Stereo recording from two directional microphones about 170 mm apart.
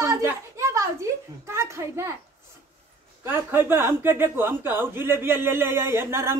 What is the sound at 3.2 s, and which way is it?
Speech, 10° right (ahead or behind).